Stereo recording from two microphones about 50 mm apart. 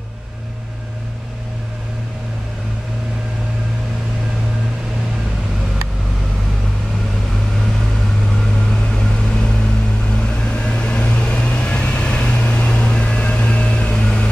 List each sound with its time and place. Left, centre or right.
8.9 s vehicle: centre